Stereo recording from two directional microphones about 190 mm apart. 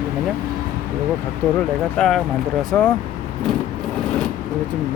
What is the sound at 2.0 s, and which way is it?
Speech, centre (ahead or behind).